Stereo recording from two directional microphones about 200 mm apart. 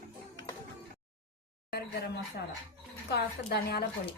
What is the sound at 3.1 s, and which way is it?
Speech, 50° left (ahead or behind).